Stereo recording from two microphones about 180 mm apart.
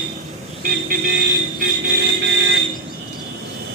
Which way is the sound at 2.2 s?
75° right (ahead or behind).